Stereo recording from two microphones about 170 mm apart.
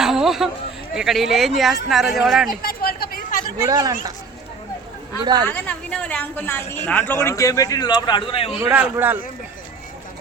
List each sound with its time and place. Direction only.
0.0 s a sound: centre (ahead or behind)
0.9 s speech: centre (ahead or behind)
2.6 s a sound: 60° left (ahead or behind)
3.6 s speech: 20° right (ahead or behind)
5.2 s speech: 25° right (ahead or behind)
5.5 s speech: 10° left (ahead or behind); by 8.5 s 30° left (ahead or behind)
8.5 s a man's voice: 10° right (ahead or behind)